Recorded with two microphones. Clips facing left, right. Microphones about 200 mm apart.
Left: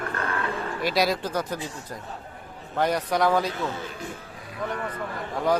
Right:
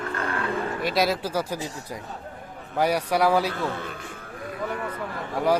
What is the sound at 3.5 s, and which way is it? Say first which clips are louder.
Speech: right 1 dB; 55° right (ahead or behind).